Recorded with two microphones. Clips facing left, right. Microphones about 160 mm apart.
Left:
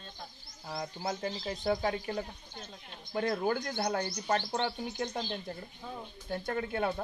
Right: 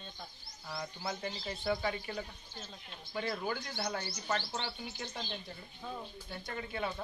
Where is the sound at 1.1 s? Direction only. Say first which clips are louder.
Left 4 dB; 45° left (ahead or behind).